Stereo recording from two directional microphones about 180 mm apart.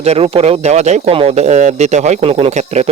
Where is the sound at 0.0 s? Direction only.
35° right (ahead or behind).